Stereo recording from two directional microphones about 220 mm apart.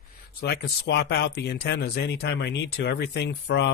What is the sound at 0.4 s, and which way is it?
Speech, 45° left (ahead or behind).